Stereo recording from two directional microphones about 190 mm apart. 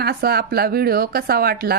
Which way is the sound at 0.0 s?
55° right (ahead or behind).